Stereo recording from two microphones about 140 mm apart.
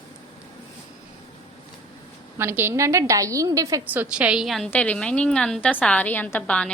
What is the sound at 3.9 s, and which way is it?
A woman's voice, 10° right (ahead or behind).